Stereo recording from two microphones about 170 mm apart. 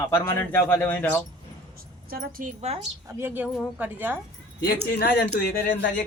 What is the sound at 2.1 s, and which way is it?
Speech, 60° right (ahead or behind).